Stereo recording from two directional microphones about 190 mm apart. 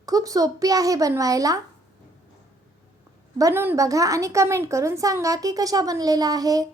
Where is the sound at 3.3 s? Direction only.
15° right (ahead or behind).